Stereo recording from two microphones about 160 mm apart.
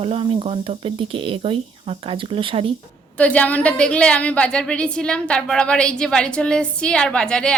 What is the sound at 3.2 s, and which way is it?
A woman's voice, 10° left (ahead or behind).